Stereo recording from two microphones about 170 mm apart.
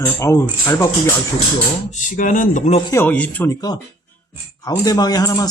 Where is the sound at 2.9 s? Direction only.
10° left (ahead or behind).